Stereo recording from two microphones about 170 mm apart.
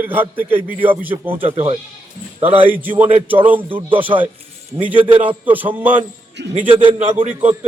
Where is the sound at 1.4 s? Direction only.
35° right (ahead or behind).